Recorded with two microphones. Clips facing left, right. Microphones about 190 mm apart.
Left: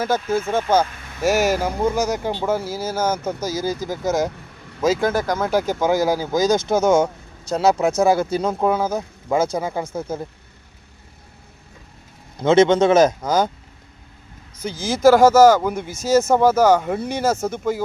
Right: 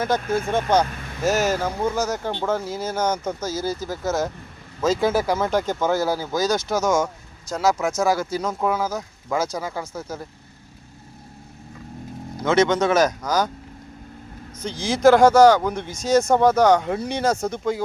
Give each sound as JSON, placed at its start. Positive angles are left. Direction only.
{"t": 0.3, "sound": "speech", "side_deg": 5}
{"t": 4.9, "sound": "speech", "side_deg": -5}
{"t": 5.5, "sound": "speech", "side_deg": 10}
{"t": 6.6, "sound": "speech", "side_deg": 55}
{"t": 7.5, "sound": "speech", "side_deg": 35}
{"t": 12.4, "sound": "speech", "side_deg": 25}
{"t": 14.6, "sound": "speech", "side_deg": 5}